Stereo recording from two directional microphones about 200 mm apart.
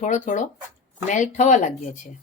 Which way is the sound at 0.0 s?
40° left (ahead or behind).